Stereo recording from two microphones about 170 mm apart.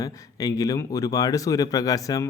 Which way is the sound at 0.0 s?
20° left (ahead or behind).